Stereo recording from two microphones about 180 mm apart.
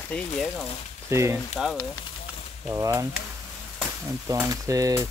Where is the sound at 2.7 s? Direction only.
15° right (ahead or behind).